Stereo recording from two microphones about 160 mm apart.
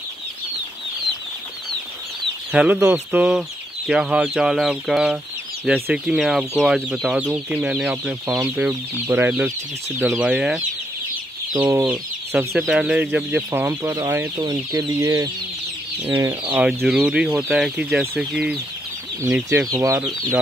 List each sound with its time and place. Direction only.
2.5 s speech: 5° right (ahead or behind)
11.5 s speech: 20° right (ahead or behind)
16.5 s speech: 5° right (ahead or behind)